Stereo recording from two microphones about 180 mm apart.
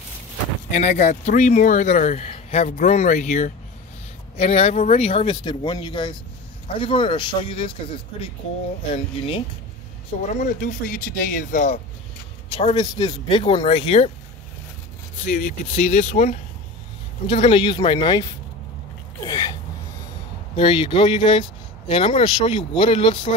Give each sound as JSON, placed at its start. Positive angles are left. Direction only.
{"t": 0.7, "sound": "a man's voice", "side_deg": 40}
{"t": 10.2, "sound": "speech", "side_deg": 50}
{"t": 12.7, "sound": "a man's voice", "side_deg": 25}
{"t": 15.2, "sound": "speech", "side_deg": 45}
{"t": 17.3, "sound": "a man's voice", "side_deg": 30}
{"t": 19.2, "sound": "sneeze", "side_deg": 20}
{"t": 20.5, "sound": "speech", "side_deg": 30}